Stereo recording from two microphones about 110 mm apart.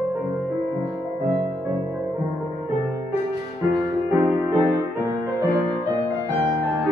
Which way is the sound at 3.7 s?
15° right (ahead or behind).